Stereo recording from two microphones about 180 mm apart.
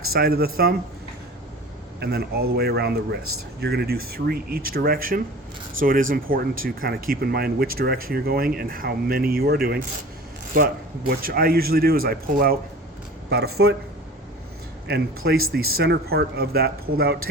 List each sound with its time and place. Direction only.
0.1 s speech: 60° right (ahead or behind)
2.0 s speech: 60° right (ahead or behind)
14.8 s speech: 60° right (ahead or behind)